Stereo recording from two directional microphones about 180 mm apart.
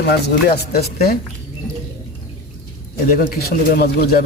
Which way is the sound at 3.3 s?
55° left (ahead or behind).